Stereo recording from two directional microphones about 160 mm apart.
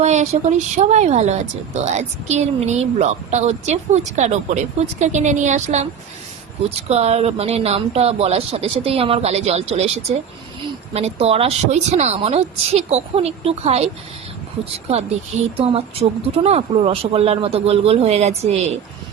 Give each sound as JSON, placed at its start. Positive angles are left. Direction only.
{"t": 0.0, "sound": "speech", "side_deg": -45}